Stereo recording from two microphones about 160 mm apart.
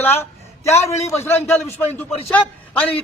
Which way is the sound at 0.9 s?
15° left (ahead or behind).